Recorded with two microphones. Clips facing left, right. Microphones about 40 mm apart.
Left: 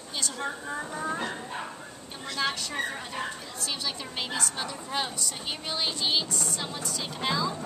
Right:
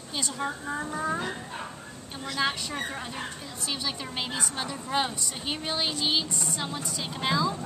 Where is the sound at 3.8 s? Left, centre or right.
Centre.